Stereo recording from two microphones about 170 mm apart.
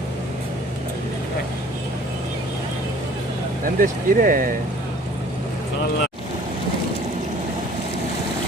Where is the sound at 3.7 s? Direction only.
55° right (ahead or behind).